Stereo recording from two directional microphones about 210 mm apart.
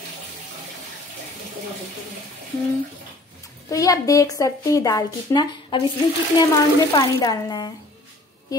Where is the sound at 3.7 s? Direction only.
15° left (ahead or behind).